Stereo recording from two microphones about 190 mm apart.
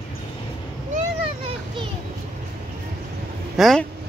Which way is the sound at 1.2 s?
30° right (ahead or behind).